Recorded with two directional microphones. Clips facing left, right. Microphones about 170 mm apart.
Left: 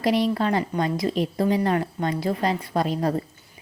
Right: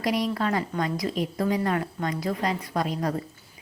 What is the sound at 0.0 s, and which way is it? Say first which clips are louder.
A woman's voice: left 4 dB; 25° left (ahead or behind).